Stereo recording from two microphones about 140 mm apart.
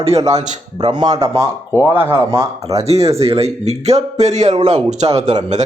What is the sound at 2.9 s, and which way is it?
A man's voice, 50° right (ahead or behind).